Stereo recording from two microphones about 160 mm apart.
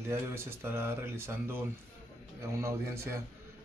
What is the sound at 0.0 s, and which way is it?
Speech, 15° right (ahead or behind).